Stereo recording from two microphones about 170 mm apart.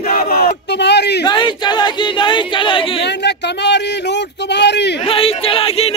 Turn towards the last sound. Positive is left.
turn(degrees=35)  # may be behind; listen again after turning